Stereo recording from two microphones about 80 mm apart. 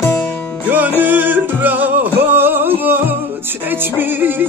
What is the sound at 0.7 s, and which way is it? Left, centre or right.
Music, right.